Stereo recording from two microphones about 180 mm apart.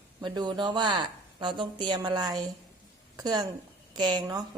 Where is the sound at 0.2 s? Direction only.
25° right (ahead or behind).